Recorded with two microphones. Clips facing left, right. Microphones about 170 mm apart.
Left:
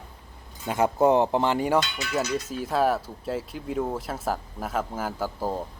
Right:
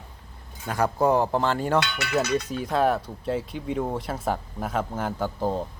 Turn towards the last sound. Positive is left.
turn(degrees=5)  # may be behind; listen again after turning